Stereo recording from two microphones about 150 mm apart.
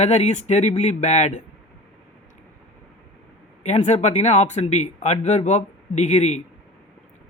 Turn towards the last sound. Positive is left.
turn(degrees=50)  # may be behind; listen again after turning